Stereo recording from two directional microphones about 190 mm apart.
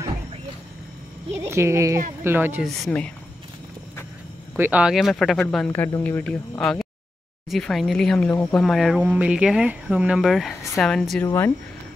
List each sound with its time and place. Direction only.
1.3 s a woman's voice: 15° right (ahead or behind)
2.6 s speech: 5° left (ahead or behind)
4.6 s speech: 10° right (ahead or behind)
11.2 s speech: 15° left (ahead or behind)